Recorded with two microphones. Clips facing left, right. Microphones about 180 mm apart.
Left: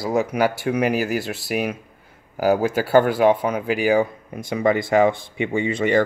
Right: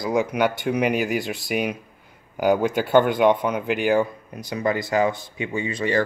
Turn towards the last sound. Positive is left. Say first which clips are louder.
# left 4 dB
turn(degrees=25)  # may be behind; listen again after turning